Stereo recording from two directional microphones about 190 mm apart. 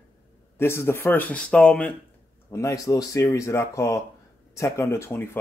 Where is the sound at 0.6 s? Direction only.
15° left (ahead or behind).